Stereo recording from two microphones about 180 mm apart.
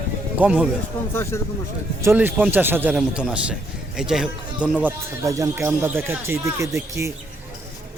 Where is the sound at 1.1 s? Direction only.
15° left (ahead or behind).